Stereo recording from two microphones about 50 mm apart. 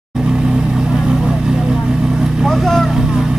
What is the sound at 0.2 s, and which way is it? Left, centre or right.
Vehicle, centre.